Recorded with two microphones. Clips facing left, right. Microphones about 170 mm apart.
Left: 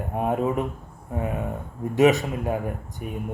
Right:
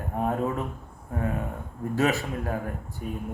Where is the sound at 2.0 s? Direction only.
15° left (ahead or behind).